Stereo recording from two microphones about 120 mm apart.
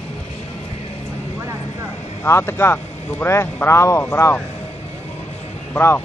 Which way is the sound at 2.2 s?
20° left (ahead or behind).